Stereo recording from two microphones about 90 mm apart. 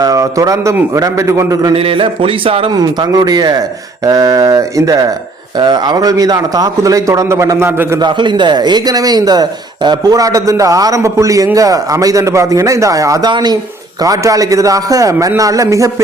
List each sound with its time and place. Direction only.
0.0 s a man's voice: 40° right (ahead or behind)
1.7 s a man's voice: 90° right
2.7 s a man's voice: 45° right (ahead or behind)
5.5 s a man's voice: 50° right (ahead or behind); by 7.9 s 25° right (ahead or behind)
7.9 s a man's voice: 55° right (ahead or behind); by 13.3 s 40° right (ahead or behind)
13.3 s a man's voice: 50° right (ahead or behind)